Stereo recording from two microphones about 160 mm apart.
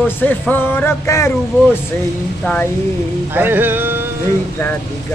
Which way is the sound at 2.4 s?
5° left (ahead or behind).